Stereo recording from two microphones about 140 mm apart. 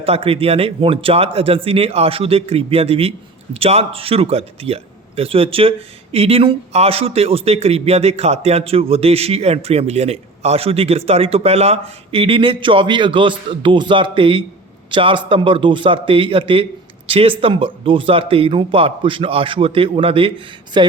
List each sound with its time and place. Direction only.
0.0 s a man's voice: 45° right (ahead or behind)